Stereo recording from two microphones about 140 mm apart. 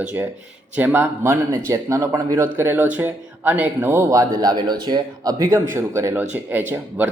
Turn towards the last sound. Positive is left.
turn(degrees=-15)  # may be behind; listen again after turning